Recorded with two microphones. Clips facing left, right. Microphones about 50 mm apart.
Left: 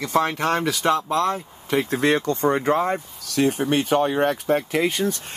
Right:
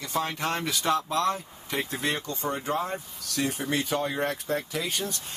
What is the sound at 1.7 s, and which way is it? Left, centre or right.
Speech, left.